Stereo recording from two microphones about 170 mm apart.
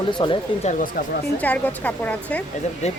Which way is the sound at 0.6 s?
50° left (ahead or behind).